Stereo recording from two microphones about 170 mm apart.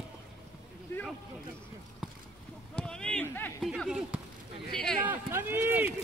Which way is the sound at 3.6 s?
Centre (ahead or behind).